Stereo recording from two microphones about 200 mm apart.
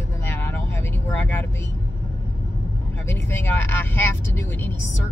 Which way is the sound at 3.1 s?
10° left (ahead or behind).